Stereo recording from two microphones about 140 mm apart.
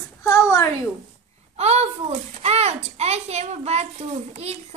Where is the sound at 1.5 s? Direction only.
50° right (ahead or behind).